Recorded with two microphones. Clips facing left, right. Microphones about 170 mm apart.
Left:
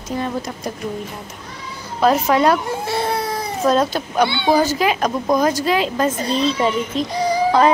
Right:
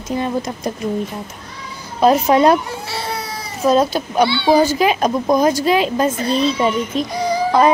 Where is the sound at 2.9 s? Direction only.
50° left (ahead or behind).